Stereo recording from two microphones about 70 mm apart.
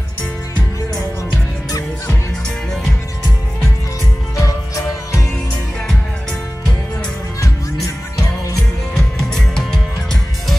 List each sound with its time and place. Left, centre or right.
4.4 s music: left
8.9 s music: centre